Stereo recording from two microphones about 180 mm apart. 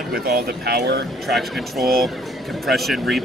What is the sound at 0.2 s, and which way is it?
Speech, 55° right (ahead or behind).